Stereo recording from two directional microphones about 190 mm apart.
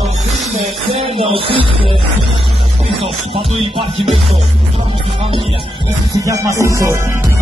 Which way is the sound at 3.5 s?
30° right (ahead or behind).